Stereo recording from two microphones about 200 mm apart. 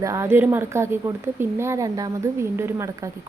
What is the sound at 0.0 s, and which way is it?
Speech, 15° right (ahead or behind).